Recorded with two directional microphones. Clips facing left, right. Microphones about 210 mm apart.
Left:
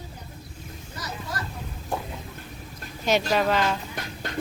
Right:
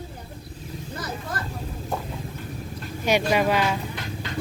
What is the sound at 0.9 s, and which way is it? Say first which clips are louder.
Vehicle: right 2 dB; 55° right (ahead or behind).